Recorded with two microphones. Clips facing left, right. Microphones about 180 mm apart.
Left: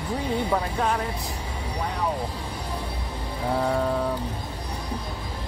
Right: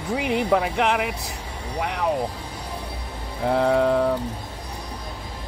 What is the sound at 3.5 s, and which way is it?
Speech, 75° right (ahead or behind).